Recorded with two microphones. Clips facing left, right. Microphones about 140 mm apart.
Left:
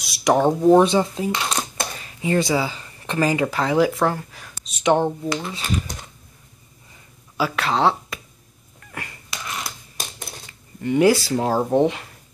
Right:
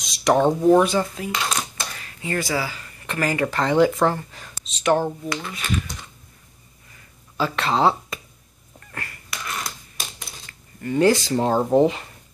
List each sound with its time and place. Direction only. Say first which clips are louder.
0.0 s speech: even; 10° left (ahead or behind)
0.7 s speech: left 3 dB; 25° left (ahead or behind); by 4.7 s 5° left (ahead or behind)
4.8 s speech: left 2 dB; 20° left (ahead or behind)
7.3 s speech: even; 5° left (ahead or behind)
8.9 s cat: left 1 dB; 15° left (ahead or behind)
9.4 s a sound: even; 10° left (ahead or behind)
10.8 s speech: left 2 dB; 15° left (ahead or behind)
11.2 s speech: right 1 dB; 5° left (ahead or behind)